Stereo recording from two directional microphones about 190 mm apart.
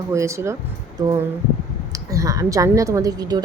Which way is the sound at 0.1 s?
15° right (ahead or behind).